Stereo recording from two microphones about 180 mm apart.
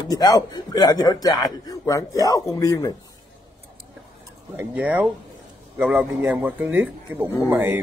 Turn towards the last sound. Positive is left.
turn(degrees=-15)  # may be behind; listen again after turning